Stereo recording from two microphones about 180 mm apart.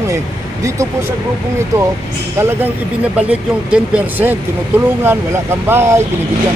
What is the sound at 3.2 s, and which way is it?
Speech, 5° right (ahead or behind).